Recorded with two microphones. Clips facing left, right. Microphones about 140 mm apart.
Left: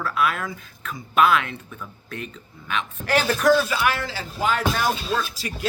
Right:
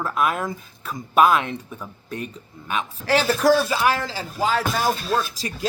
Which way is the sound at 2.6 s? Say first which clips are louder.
Right 3 dB; 35° right (ahead or behind).